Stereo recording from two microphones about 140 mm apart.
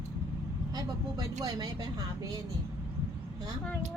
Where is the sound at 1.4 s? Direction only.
25° right (ahead or behind).